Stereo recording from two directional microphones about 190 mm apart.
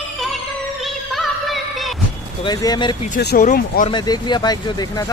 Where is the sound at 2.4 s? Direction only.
20° left (ahead or behind).